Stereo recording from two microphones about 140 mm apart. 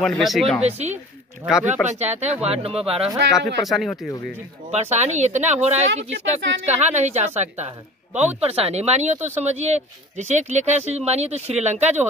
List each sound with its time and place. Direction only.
0.0 s speech: centre (ahead or behind)
0.7 s speech: 50° right (ahead or behind)
3.6 s speech: centre (ahead or behind)
4.6 s a woman's voice: 50° right (ahead or behind)
8.1 s speech: 10° right (ahead or behind)
8.4 s speech: 45° right (ahead or behind)